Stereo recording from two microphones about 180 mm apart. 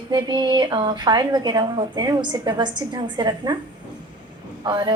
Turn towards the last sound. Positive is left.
turn(degrees=-25)  # may be behind; listen again after turning